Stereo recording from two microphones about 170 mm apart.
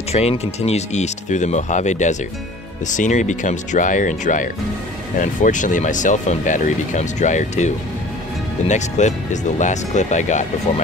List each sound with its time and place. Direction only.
0.1 s speech: 40° left (ahead or behind)